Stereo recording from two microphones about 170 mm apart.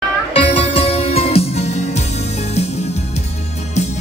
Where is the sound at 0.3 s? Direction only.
35° left (ahead or behind).